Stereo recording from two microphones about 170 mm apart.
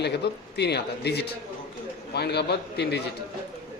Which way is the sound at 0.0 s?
80° left.